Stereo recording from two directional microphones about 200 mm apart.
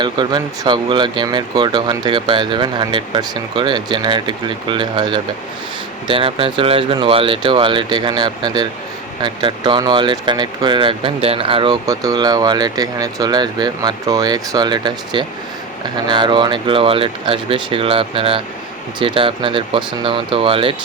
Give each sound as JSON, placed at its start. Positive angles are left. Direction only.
{"t": 0.0, "sound": "speech", "side_deg": -20}